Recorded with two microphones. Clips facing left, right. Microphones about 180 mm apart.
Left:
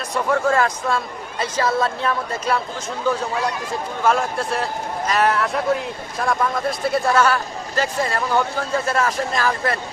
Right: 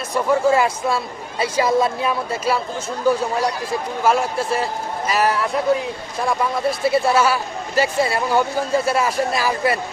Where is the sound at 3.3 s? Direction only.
35° right (ahead or behind).